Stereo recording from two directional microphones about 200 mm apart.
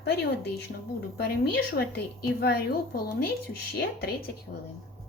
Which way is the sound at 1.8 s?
50° left (ahead or behind).